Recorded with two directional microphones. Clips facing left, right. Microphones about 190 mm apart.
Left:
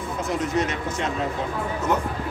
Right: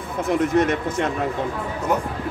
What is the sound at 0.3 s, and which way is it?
Speech, 55° right (ahead or behind).